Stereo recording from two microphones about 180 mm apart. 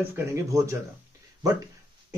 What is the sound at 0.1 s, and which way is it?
Speech, 15° right (ahead or behind).